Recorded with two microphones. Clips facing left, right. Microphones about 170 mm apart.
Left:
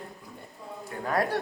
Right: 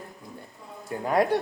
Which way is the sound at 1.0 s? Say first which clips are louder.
Right 5 dB; 20° right (ahead or behind).